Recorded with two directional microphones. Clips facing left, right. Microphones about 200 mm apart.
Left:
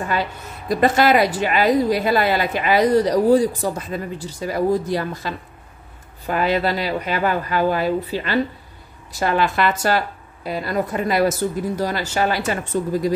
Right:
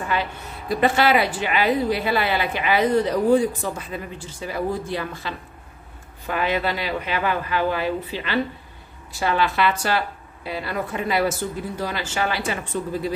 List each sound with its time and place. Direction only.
0.1 s a woman's voice: 40° left (ahead or behind)